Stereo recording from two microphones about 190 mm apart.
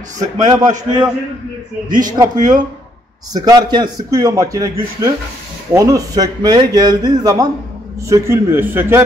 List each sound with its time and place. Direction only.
0.4 s speech: 20° right (ahead or behind)
1.9 s a man's voice: 45° right (ahead or behind)
3.3 s a man's voice: 20° right (ahead or behind)